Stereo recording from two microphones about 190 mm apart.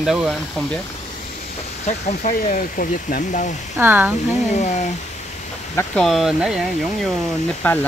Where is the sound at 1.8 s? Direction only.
40° left (ahead or behind).